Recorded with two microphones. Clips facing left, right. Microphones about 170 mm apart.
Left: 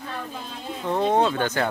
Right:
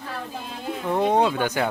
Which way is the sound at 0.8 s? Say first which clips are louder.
Even; 15° right (ahead or behind).